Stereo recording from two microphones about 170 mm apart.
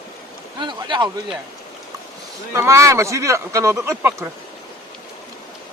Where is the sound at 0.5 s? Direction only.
25° right (ahead or behind).